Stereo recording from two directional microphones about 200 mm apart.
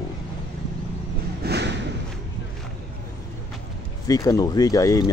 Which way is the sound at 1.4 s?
55° right (ahead or behind).